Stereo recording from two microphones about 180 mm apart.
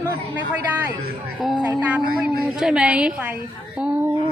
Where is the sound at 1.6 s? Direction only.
10° right (ahead or behind).